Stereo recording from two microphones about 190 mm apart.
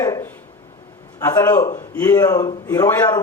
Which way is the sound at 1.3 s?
20° left (ahead or behind).